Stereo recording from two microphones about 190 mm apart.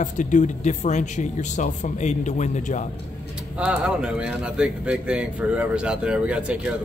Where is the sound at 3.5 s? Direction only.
5° right (ahead or behind).